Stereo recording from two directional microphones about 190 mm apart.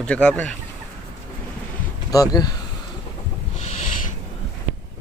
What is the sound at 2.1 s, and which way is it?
Speech, 20° left (ahead or behind).